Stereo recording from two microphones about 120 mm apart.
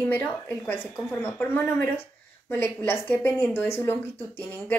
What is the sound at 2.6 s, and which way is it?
A woman's voice, 15° left (ahead or behind).